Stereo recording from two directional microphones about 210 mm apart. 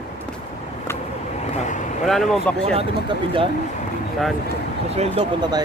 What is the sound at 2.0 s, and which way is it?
Speech, centre (ahead or behind).